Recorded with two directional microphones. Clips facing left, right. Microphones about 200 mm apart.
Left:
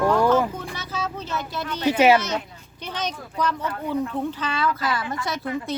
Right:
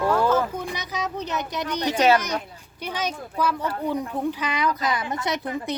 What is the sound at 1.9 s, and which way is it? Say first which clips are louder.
Speech: left 2 dB; 10° left (ahead or behind).